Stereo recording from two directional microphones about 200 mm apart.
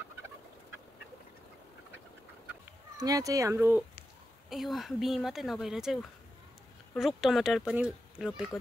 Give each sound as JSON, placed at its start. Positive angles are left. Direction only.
{"t": 3.0, "sound": "speech", "side_deg": -15}
{"t": 4.5, "sound": "speech", "side_deg": 0}